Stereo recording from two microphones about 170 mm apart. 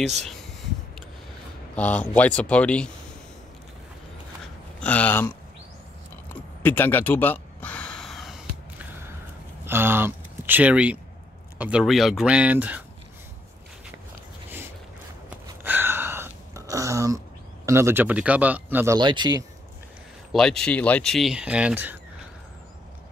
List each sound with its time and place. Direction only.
1.8 s speech: 10° left (ahead or behind)
4.7 s speech: 10° left (ahead or behind)
6.2 s a sound: 10° left (ahead or behind)
9.7 s speech: 15° right (ahead or behind)
15.4 s a sound: 10° right (ahead or behind)
17.6 s speech: 15° right (ahead or behind)
18.9 s speech: 25° right (ahead or behind)
20.3 s speech: 5° left (ahead or behind)